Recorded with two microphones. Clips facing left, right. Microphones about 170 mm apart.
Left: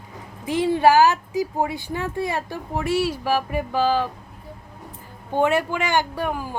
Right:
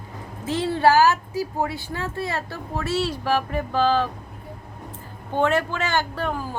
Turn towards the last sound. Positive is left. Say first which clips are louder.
# left 1 dB
turn(degrees=15)  # may be behind; listen again after turning